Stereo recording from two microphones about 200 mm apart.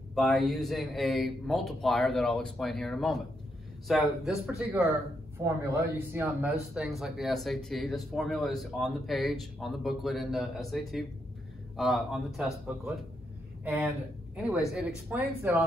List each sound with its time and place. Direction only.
0.1 s speech: centre (ahead or behind)
5.4 s speech: 10° right (ahead or behind)
13.7 s speech: 5° right (ahead or behind)